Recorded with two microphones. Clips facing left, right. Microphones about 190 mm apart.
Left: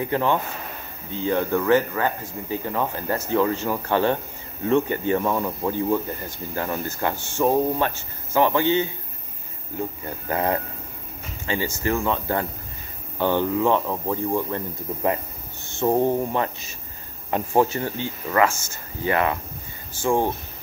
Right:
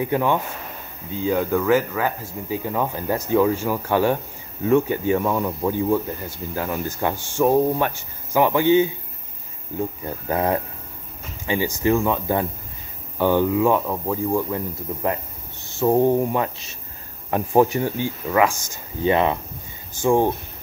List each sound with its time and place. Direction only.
0.0 s speech: 10° right (ahead or behind)
10.0 s speech: 10° right (ahead or behind)
15.7 s speech: 5° right (ahead or behind)